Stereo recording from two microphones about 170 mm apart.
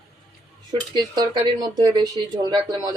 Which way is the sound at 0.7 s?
25° right (ahead or behind).